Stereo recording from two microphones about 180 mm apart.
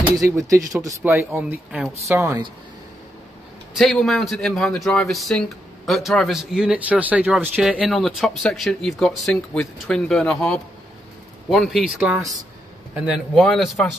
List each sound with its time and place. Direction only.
0.0 s speech: 20° right (ahead or behind)
3.7 s a man's voice: centre (ahead or behind)